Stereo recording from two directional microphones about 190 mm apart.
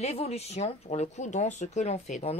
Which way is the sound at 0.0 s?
35° left (ahead or behind).